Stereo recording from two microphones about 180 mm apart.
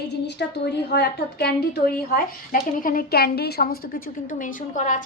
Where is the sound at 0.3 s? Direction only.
70° left (ahead or behind).